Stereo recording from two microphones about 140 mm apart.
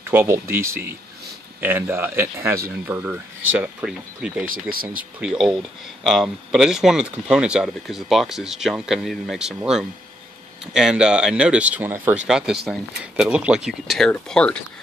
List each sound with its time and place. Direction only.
0.1 s speech: 15° right (ahead or behind)
4.5 s speech: 90° right
5.2 s speech: 5° right (ahead or behind)